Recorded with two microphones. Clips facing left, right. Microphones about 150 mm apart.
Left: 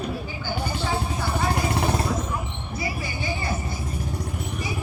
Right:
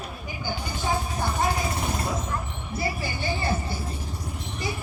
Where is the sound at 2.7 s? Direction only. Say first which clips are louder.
Right 1 dB; 25° right (ahead or behind).